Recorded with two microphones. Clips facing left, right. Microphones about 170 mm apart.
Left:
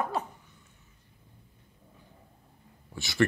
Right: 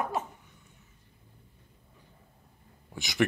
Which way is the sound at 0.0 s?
20° right (ahead or behind).